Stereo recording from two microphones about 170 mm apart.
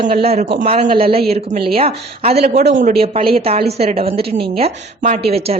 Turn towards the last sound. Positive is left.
turn(degrees=-35)  # may be behind; listen again after turning